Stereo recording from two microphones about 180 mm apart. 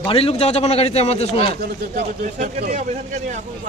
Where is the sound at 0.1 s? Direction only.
30° left (ahead or behind).